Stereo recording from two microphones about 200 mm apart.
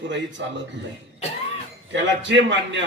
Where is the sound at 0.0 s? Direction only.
65° right (ahead or behind).